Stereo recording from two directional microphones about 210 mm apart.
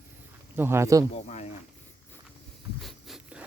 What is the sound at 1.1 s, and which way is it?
Speech, 30° left (ahead or behind).